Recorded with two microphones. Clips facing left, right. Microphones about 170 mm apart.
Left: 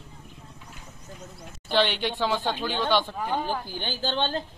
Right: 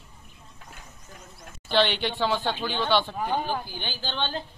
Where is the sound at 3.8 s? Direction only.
40° left (ahead or behind).